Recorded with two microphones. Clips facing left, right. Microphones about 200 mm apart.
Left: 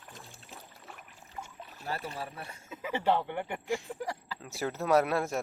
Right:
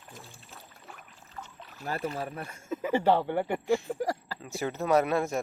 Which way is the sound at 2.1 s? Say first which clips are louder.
Right 5 dB; 45° right (ahead or behind).